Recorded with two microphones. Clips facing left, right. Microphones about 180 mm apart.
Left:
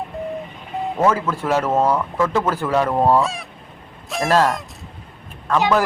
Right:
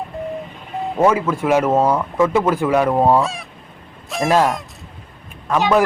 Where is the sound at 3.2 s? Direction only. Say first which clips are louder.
Right 1 dB; centre (ahead or behind).